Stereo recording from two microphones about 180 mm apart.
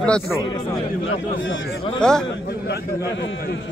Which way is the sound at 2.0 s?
5° left (ahead or behind).